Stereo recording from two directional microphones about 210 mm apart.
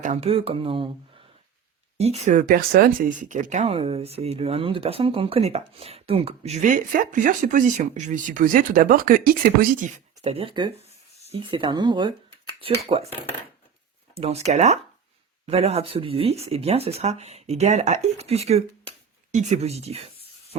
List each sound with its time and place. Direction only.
0.0 s speech: 30° right (ahead or behind)
2.0 s speech: 30° right (ahead or behind)
10.8 s a sound: 30° left (ahead or behind)
11.3 s speech: 25° right (ahead or behind)
14.2 s speech: 30° right (ahead or behind)